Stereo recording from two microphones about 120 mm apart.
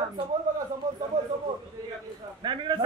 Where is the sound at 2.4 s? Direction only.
40° right (ahead or behind).